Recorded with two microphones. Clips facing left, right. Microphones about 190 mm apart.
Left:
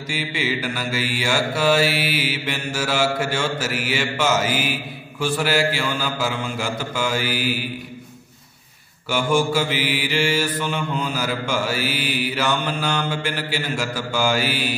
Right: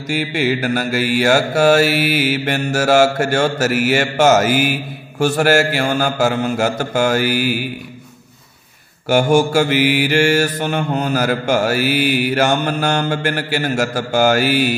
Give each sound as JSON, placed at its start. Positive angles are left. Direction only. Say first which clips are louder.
{"t": 0.1, "sound": "mantra", "louder": "right 7 dB", "side_deg": -60}
{"t": 3.0, "sound": "mantra", "louder": "right 7 dB", "side_deg": -45}
{"t": 6.8, "sound": "mantra", "louder": "right 8 dB", "side_deg": -70}
{"t": 7.2, "sound": "mantra", "louder": "right 6 dB", "side_deg": -45}
{"t": 9.3, "sound": "mantra", "louder": "right 3 dB", "side_deg": -45}
{"t": 9.6, "sound": "mantra", "louder": "right 8 dB", "side_deg": -65}
{"t": 11.6, "sound": "mantra", "louder": "right 8 dB", "side_deg": -60}
{"t": 13.1, "sound": "mantra", "louder": "right 6 dB", "side_deg": -60}
{"t": 13.9, "sound": "mantra", "louder": "right 7 dB", "side_deg": -65}